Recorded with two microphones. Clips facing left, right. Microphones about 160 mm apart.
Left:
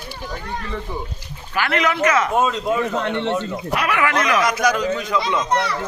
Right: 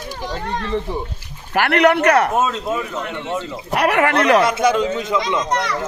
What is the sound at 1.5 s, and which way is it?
Speech, 65° right (ahead or behind).